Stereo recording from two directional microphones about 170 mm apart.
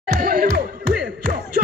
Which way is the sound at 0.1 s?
60° right (ahead or behind).